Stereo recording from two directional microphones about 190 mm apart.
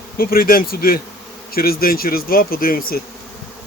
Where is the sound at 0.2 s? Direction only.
50° left (ahead or behind).